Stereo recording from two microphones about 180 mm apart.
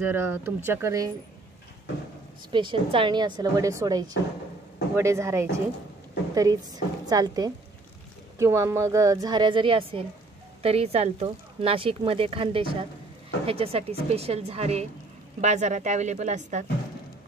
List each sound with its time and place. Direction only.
0.0 s speech: 10° right (ahead or behind)
2.5 s a woman's voice: 30° right (ahead or behind)